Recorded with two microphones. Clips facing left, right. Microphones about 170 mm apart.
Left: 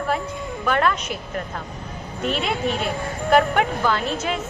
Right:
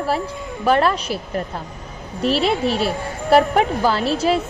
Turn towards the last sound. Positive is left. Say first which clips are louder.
# right 5 dB
turn(degrees=-35)  # may be behind; listen again after turning